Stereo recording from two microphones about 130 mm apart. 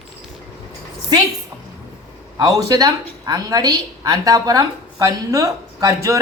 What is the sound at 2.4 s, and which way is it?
A woman's voice, 25° right (ahead or behind).